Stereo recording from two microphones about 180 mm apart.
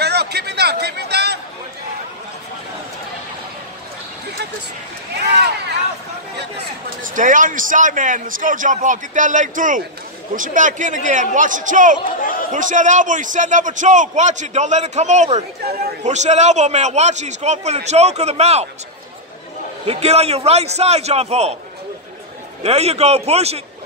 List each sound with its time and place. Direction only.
0.0 s a sound: 65° right (ahead or behind)
7.0 s a man's voice: 45° right (ahead or behind)
12.2 s chatter: 50° left (ahead or behind)
12.5 s a man's voice: 45° right (ahead or behind)
19.9 s a man's voice: 35° right (ahead or behind)
22.6 s a man's voice: 35° right (ahead or behind)